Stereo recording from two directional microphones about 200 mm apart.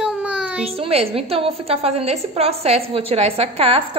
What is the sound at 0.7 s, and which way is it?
A woman's voice, 30° right (ahead or behind).